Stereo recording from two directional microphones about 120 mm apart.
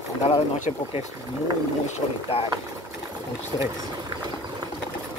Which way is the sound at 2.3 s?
55° left (ahead or behind).